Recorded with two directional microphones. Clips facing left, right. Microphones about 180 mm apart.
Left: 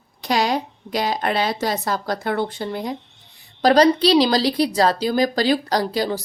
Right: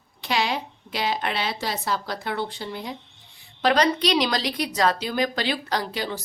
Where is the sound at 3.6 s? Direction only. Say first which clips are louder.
Left 6 dB; 35° left (ahead or behind).